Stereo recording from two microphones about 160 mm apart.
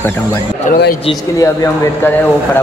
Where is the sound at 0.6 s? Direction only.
55° left (ahead or behind).